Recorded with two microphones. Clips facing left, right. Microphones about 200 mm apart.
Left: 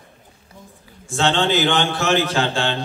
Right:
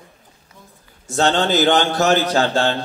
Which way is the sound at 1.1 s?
40° right (ahead or behind).